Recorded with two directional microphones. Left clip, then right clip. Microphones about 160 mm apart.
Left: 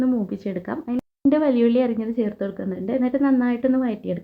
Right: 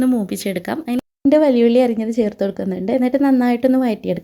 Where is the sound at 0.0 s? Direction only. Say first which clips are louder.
Right 5 dB; 30° right (ahead or behind).